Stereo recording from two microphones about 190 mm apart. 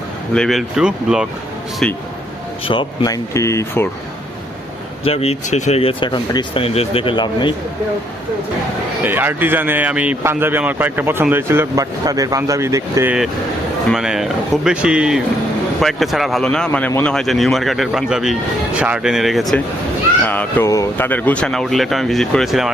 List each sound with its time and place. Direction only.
0.3 s speech: centre (ahead or behind)
2.6 s speech: 25° left (ahead or behind)
5.0 s speech: 30° left (ahead or behind)
9.0 s speech: 10° right (ahead or behind)
13.9 s speech: centre (ahead or behind)